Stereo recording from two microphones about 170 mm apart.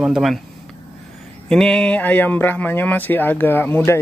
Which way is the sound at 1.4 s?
5° left (ahead or behind).